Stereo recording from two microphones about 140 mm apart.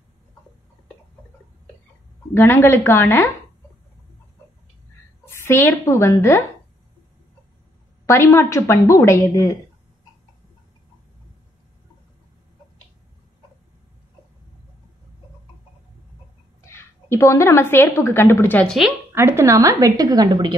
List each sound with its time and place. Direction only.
2.3 s a woman's voice: 20° left (ahead or behind)
5.2 s a woman's voice: 15° left (ahead or behind)
8.1 s a woman's voice: 20° left (ahead or behind)
16.6 s a woman's voice: 20° left (ahead or behind)
18.7 s speech: centre (ahead or behind)
19.1 s a woman's voice: 20° right (ahead or behind)